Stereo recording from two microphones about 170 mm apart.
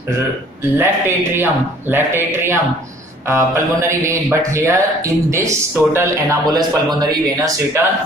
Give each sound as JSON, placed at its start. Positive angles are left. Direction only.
{"t": 0.7, "sound": "speech", "side_deg": -15}